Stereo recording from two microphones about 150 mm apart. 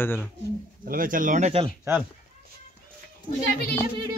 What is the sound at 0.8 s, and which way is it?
Speech, 70° right (ahead or behind).